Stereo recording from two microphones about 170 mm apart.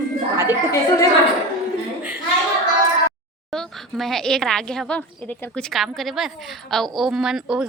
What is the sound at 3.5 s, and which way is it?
A woman's voice, centre (ahead or behind).